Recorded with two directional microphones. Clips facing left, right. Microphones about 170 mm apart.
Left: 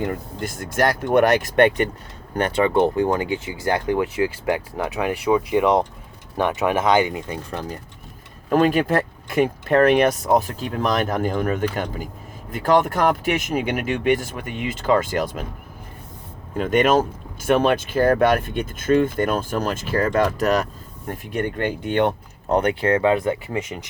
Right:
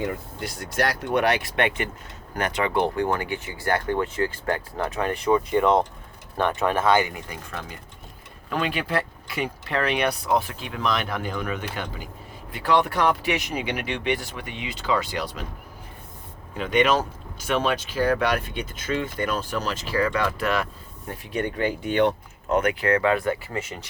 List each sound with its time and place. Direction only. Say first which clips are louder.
0.1 s speech: left 4 dB; 50° left (ahead or behind)
16.6 s speech: left 4 dB; 45° left (ahead or behind)
22.5 s speech: left 3 dB; 30° left (ahead or behind); by 23.8 s 15° left (ahead or behind)